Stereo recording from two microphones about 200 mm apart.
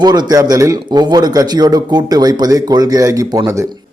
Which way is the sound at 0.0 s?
20° right (ahead or behind).